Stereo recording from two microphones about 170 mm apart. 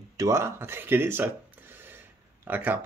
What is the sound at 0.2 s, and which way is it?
Speech, 15° right (ahead or behind).